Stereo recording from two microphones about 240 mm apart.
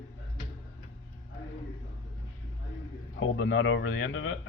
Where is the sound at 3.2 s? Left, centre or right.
Left.